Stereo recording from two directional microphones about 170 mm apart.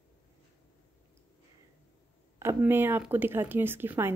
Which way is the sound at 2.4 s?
15° right (ahead or behind).